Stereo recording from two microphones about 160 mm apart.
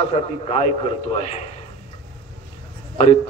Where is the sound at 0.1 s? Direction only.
40° left (ahead or behind).